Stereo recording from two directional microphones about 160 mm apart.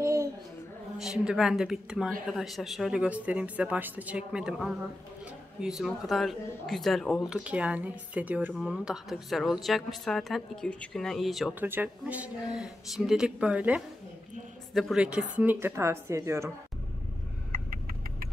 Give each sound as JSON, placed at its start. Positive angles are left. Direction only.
{"t": 0.0, "sound": "a sound", "side_deg": -20}
{"t": 0.9, "sound": "speech", "side_deg": -5}
{"t": 11.6, "sound": "speech", "side_deg": -10}